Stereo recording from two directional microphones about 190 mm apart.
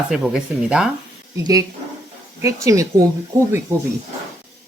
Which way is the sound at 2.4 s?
15° right (ahead or behind).